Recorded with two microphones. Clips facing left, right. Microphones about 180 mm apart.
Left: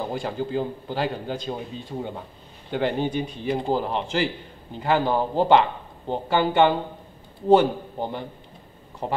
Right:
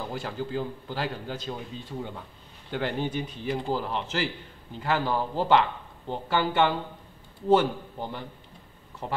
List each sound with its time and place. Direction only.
0.0 s speech: 20° left (ahead or behind)